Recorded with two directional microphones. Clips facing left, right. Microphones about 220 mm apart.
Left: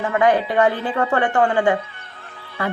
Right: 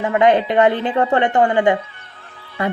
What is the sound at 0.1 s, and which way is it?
Speech, 20° right (ahead or behind).